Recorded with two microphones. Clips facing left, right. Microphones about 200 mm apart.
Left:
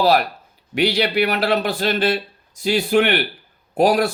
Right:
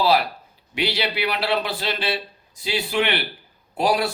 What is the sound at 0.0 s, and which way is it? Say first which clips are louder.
Speech: left 3 dB; 45° left (ahead or behind).